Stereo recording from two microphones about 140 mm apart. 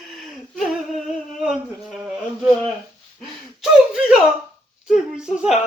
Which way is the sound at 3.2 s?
5° right (ahead or behind).